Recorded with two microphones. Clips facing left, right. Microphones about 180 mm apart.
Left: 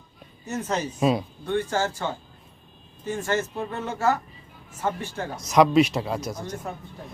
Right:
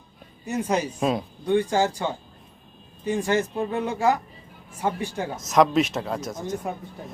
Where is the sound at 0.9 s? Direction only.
Centre (ahead or behind).